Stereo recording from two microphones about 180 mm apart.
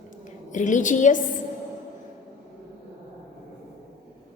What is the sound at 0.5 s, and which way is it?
Speech, 45° left (ahead or behind).